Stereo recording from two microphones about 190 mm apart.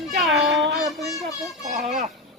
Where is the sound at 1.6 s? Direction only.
35° right (ahead or behind).